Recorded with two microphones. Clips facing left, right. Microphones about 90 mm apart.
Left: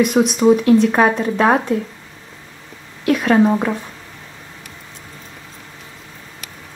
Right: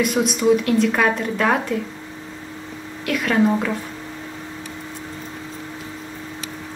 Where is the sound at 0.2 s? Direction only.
25° left (ahead or behind).